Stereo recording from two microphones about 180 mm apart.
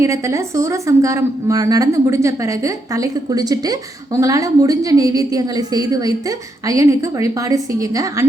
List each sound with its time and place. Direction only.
0.0 s a woman's voice: 15° right (ahead or behind)